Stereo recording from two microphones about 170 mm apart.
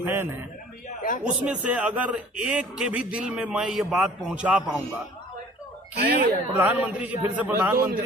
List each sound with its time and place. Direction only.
0.0 s a sound: 15° right (ahead or behind)
1.2 s a man's voice: 5° right (ahead or behind)
6.0 s speech: 70° right (ahead or behind)
6.6 s a man's voice: 10° right (ahead or behind)